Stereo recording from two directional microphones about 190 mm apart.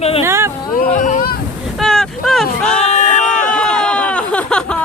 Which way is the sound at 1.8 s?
Centre (ahead or behind).